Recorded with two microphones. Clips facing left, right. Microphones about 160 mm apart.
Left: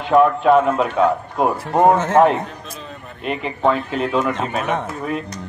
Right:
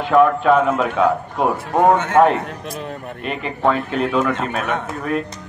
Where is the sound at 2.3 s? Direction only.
65° right (ahead or behind).